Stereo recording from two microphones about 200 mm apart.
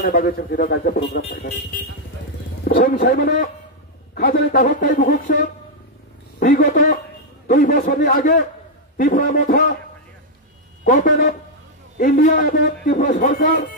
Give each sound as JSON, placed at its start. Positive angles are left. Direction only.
{"t": 0.0, "sound": "speech", "side_deg": 45}
{"t": 1.0, "sound": "speech", "side_deg": 55}
{"t": 2.6, "sound": "speech", "side_deg": 45}
{"t": 10.9, "sound": "a man's voice", "side_deg": 40}